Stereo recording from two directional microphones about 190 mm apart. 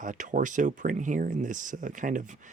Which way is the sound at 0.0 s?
40° right (ahead or behind).